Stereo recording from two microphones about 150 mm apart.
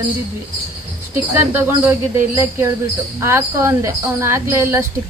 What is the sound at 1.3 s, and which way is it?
Speech, 15° right (ahead or behind).